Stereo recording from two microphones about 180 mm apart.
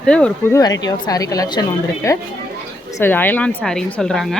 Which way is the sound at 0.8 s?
20° left (ahead or behind).